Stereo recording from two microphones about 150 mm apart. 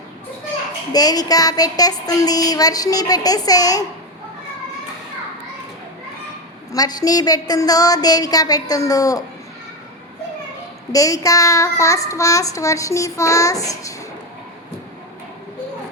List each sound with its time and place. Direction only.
0.9 s a child's voice: 25° left (ahead or behind)
6.7 s a child's voice: 25° left (ahead or behind)
10.9 s a child's voice: 20° left (ahead or behind)